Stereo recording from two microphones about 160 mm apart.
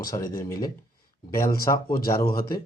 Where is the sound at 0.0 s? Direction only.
20° left (ahead or behind).